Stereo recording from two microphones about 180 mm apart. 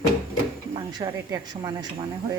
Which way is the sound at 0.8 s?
20° right (ahead or behind).